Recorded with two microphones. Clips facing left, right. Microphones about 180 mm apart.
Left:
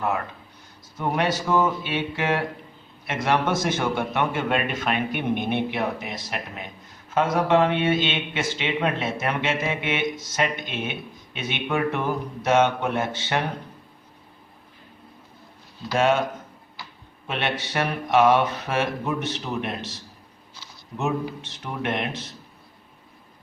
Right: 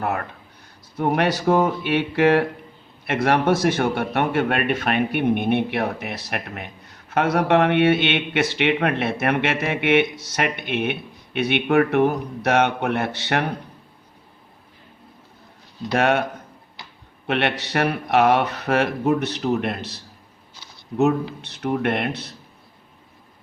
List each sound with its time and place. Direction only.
0.9 s a man's voice: 60° right (ahead or behind)
15.9 s a man's voice: 60° right (ahead or behind)
17.2 s a man's voice: 65° right (ahead or behind)
21.4 s speech: 65° right (ahead or behind)